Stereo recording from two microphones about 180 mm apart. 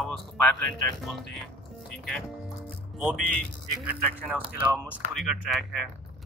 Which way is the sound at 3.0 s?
5° left (ahead or behind).